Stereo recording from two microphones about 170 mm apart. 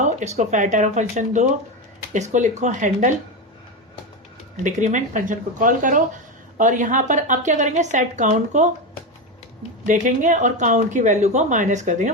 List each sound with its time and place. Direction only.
0.0 s speech: 45° right (ahead or behind)
4.6 s speech: 45° right (ahead or behind)
9.8 s speech: 50° right (ahead or behind)